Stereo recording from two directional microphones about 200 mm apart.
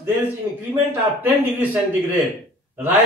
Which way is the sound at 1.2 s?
10° right (ahead or behind).